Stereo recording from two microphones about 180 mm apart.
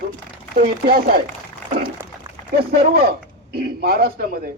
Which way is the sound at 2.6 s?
60° right (ahead or behind).